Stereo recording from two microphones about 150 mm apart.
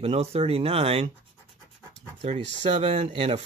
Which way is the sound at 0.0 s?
45° right (ahead or behind).